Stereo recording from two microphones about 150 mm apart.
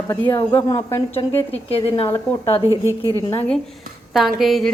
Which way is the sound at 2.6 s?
20° right (ahead or behind).